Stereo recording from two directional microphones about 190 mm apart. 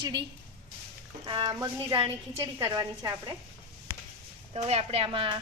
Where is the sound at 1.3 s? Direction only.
25° right (ahead or behind).